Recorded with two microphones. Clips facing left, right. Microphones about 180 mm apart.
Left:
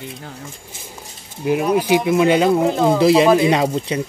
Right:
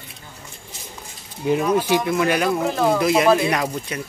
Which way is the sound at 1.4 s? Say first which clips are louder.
Left 2 dB; 10° left (ahead or behind).